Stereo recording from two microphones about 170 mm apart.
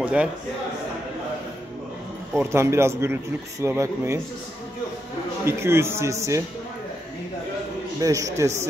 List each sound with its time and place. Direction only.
0.0 s a man's voice: 5° right (ahead or behind)
2.3 s a man's voice: 15° right (ahead or behind)
5.4 s a man's voice: 15° right (ahead or behind)
8.0 s a man's voice: 20° right (ahead or behind)